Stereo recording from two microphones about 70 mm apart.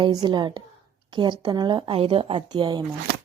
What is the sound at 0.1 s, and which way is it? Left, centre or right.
A woman's voice, right.